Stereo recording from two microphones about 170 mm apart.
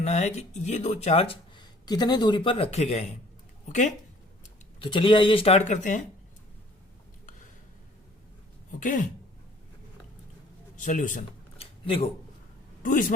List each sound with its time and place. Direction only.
0.0 s speech: 40° left (ahead or behind)
4.8 s speech: 30° left (ahead or behind); by 6.1 s 45° left (ahead or behind)
8.8 s speech: 50° left (ahead or behind)
10.8 s speech: 50° left (ahead or behind)
11.5 s a sound: 35° left (ahead or behind)
12.8 s a man's voice: 50° left (ahead or behind)